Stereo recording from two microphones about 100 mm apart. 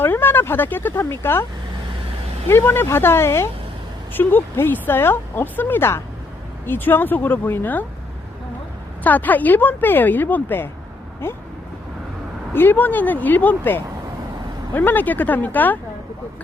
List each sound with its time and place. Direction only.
0.0 s speech: 20° left (ahead or behind)
2.5 s speech: 25° left (ahead or behind)
9.0 s speech: 15° left (ahead or behind)
12.5 s speech: 20° left (ahead or behind)